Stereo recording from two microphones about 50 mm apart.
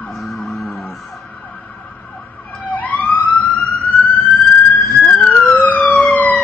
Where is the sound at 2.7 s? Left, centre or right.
Left.